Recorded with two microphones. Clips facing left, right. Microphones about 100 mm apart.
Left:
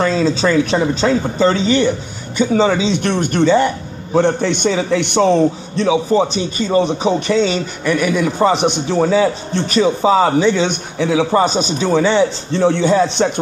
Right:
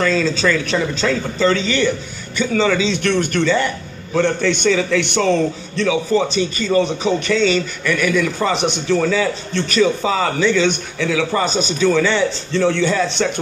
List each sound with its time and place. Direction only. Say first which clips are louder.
0.0 s speech: left 2 dB; 25° left (ahead or behind)